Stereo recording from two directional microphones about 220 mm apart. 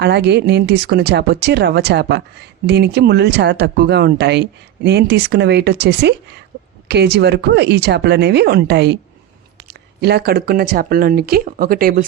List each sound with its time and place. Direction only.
0.0 s speech: 50° right (ahead or behind)
10.0 s speech: 45° right (ahead or behind)